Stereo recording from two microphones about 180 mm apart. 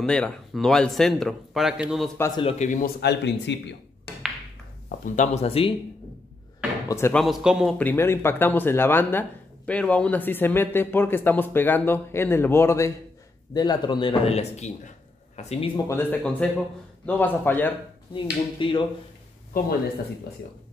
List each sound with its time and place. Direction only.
0.0 s a man's voice: 5° left (ahead or behind)
2.1 s speech: 15° left (ahead or behind)
2.4 s speech: 45° left (ahead or behind)
3.0 s speech: 70° left (ahead or behind)
4.8 s speech: 45° left (ahead or behind)
6.9 s speech: 15° left (ahead or behind)
7.2 s a man's voice: 5° right (ahead or behind)
7.7 s a man's voice: 10° left (ahead or behind); by 15.8 s 35° left (ahead or behind)
15.9 s a man's voice: 10° left (ahead or behind)
18.6 s a man's voice: 25° left (ahead or behind)
19.5 s speech: 50° left (ahead or behind)